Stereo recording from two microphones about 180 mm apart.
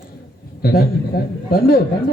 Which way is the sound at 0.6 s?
55° left (ahead or behind).